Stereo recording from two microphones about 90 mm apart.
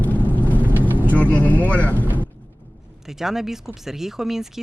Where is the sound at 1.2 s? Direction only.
15° left (ahead or behind).